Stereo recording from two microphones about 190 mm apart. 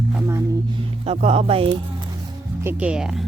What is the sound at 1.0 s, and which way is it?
Speech, 35° right (ahead or behind).